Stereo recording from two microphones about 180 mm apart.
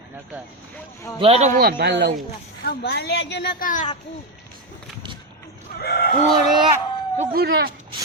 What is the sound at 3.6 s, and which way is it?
Speech, 45° left (ahead or behind).